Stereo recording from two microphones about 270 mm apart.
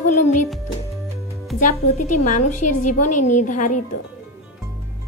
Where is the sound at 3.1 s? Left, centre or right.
Left.